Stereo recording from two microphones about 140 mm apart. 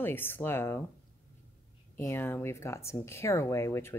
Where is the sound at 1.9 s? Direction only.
15° left (ahead or behind).